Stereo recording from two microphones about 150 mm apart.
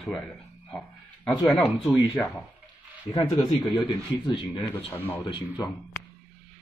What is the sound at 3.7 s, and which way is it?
Speech, 30° left (ahead or behind).